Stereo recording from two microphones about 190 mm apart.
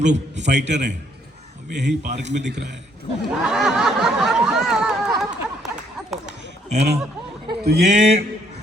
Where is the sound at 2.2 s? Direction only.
65° right (ahead or behind).